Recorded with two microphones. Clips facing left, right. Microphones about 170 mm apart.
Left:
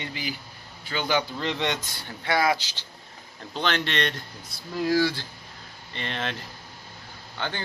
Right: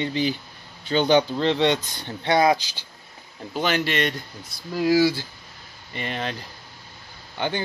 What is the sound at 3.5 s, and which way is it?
A man's voice, 5° right (ahead or behind).